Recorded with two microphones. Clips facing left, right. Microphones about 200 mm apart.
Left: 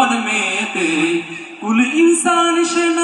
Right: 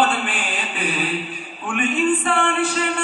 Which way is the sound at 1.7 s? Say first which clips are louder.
Left 9 dB; 60° left (ahead or behind).